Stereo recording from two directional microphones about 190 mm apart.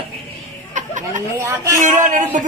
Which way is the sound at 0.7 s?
40° right (ahead or behind).